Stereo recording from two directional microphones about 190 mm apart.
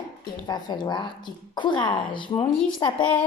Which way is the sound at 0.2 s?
20° left (ahead or behind).